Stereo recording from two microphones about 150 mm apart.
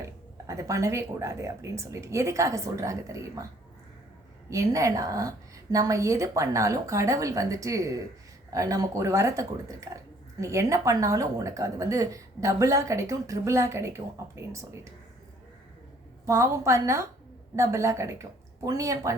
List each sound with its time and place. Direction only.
0.0 s a woman's voice: 20° right (ahead or behind)
4.4 s a woman's voice: 20° right (ahead or behind)
16.2 s a woman's voice: 20° right (ahead or behind)